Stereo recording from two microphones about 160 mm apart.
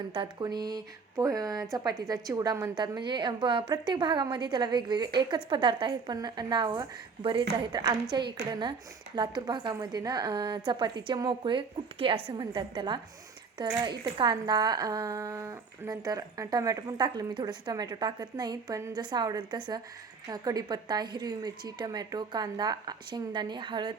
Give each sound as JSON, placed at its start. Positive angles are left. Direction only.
{"t": 0.1, "sound": "speech", "side_deg": -30}